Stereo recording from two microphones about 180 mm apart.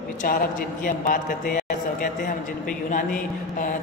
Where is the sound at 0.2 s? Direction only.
50° left (ahead or behind).